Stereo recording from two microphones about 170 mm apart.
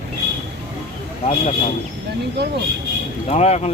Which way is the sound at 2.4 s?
80° right.